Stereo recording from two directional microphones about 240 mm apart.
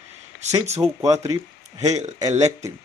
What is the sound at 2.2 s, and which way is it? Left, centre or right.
Speech, centre.